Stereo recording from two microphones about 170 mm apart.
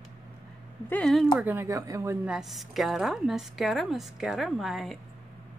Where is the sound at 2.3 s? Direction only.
Centre (ahead or behind).